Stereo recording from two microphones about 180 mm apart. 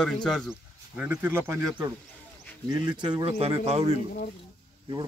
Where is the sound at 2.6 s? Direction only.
20° right (ahead or behind).